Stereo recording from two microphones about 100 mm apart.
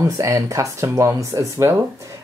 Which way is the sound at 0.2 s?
30° right (ahead or behind).